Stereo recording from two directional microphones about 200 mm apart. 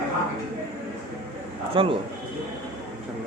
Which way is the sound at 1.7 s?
25° right (ahead or behind).